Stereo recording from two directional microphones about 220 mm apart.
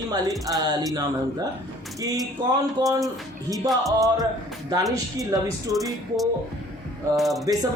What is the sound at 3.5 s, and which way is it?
Music, centre (ahead or behind).